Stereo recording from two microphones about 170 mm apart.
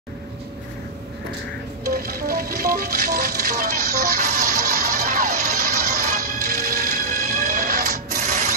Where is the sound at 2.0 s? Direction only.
65° right (ahead or behind).